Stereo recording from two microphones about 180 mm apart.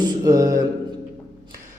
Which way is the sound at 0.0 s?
20° right (ahead or behind).